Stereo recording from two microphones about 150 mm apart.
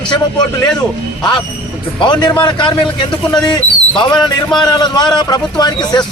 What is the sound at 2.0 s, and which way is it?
A man's voice, 30° left (ahead or behind).